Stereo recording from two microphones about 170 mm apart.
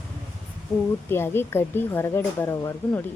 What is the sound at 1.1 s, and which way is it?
Speech, 15° left (ahead or behind).